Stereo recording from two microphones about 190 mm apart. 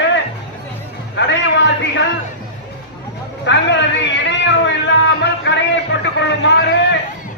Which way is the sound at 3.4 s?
70° left (ahead or behind).